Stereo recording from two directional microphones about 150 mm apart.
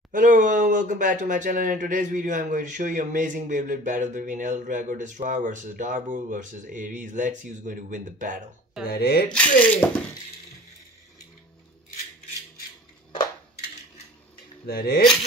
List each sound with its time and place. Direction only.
0.1 s speech: 60° right (ahead or behind)
8.8 s speech: 90° left
9.3 s speech: 10° left (ahead or behind)
14.7 s speech: 85° left